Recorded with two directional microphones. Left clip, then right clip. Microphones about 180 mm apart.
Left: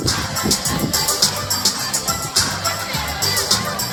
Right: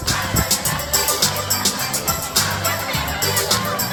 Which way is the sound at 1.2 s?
30° right (ahead or behind).